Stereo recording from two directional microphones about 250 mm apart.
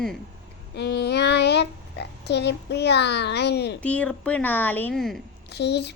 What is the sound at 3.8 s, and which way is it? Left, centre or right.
A woman's voice, centre.